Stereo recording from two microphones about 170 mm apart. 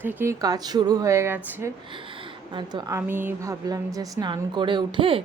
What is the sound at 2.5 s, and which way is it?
Speech, 25° right (ahead or behind).